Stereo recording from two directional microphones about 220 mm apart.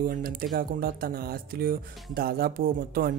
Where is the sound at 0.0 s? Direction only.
40° right (ahead or behind).